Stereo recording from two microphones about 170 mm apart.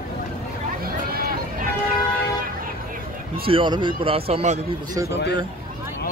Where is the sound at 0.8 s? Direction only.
60° right (ahead or behind).